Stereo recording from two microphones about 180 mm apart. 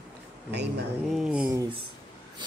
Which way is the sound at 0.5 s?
70° right (ahead or behind).